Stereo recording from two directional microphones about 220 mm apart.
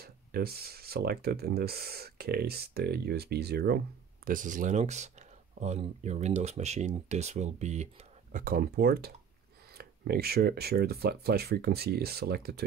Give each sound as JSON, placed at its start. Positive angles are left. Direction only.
{"t": 0.0, "sound": "speech", "side_deg": -45}